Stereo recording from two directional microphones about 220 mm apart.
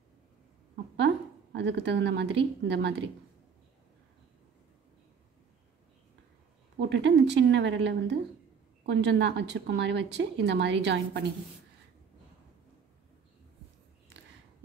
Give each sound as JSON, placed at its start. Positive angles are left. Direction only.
{"t": 0.9, "sound": "a woman's voice", "side_deg": -50}
{"t": 6.8, "sound": "speech", "side_deg": -50}